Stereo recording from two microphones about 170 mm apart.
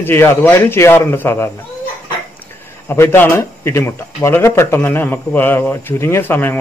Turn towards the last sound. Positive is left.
turn(degrees=10)  # may be behind; listen again after turning